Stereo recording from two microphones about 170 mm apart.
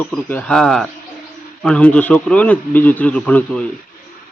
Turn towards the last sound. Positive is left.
turn(degrees=5)  # may be behind; listen again after turning